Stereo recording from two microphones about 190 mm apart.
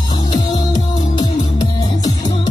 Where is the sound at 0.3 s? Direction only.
20° left (ahead or behind).